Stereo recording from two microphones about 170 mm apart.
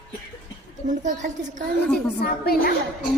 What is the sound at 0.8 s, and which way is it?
Speech, 45° right (ahead or behind).